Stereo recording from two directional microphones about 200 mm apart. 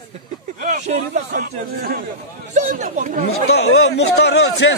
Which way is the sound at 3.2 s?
55° left (ahead or behind).